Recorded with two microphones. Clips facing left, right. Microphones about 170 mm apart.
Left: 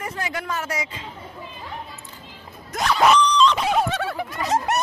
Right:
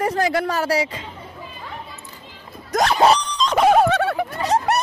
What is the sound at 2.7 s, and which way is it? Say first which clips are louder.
Speech: right 5 dB; 45° right (ahead or behind).